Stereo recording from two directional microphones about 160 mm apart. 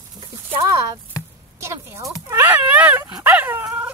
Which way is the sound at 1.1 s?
20° left (ahead or behind).